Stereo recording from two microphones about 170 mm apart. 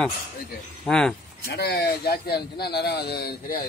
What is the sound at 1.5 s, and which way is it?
Speech, 70° left (ahead or behind).